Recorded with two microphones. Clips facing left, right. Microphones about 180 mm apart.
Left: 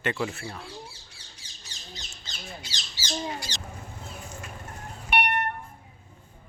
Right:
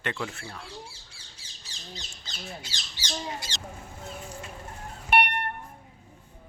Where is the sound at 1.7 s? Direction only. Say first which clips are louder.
Right 2 dB; 30° right (ahead or behind).